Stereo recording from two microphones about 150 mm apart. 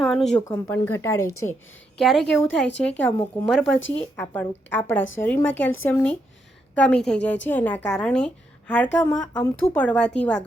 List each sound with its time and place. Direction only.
0.0 s speech: centre (ahead or behind)
0.4 s a woman's voice: 15° left (ahead or behind)
2.0 s a woman's voice: centre (ahead or behind)